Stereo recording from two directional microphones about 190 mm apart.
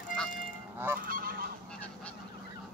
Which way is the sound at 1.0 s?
50° right (ahead or behind).